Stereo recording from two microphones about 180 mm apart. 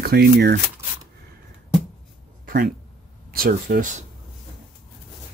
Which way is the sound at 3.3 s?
60° right (ahead or behind).